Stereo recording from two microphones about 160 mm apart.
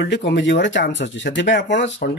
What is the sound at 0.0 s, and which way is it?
Speech, 90° left.